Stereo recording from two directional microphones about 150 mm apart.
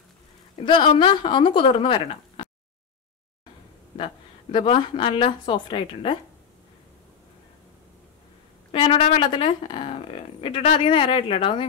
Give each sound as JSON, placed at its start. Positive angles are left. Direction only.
{"t": 0.6, "sound": "speech", "side_deg": 35}
{"t": 3.9, "sound": "speech", "side_deg": 35}
{"t": 8.7, "sound": "speech", "side_deg": 35}